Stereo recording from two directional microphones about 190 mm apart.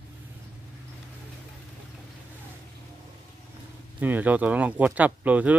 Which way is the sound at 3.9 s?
10° right (ahead or behind).